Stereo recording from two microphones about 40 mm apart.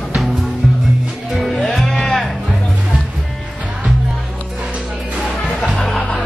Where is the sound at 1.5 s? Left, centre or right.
Centre.